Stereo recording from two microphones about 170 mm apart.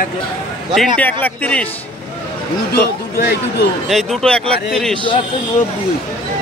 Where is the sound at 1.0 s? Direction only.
10° left (ahead or behind).